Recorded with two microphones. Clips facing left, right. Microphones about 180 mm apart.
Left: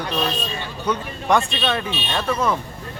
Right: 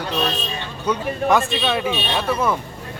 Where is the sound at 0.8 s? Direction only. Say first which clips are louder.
Right 3 dB; 5° right (ahead or behind).